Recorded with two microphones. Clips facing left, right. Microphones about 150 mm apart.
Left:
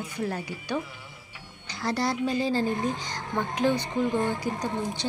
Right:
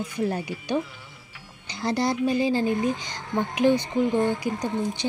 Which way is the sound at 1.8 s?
20° right (ahead or behind).